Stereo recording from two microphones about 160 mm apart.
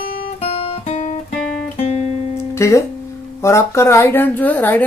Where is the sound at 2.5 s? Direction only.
20° left (ahead or behind).